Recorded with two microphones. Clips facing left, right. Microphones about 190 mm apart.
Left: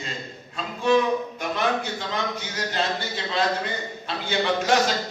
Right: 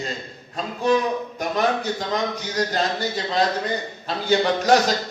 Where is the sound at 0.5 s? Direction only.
40° right (ahead or behind).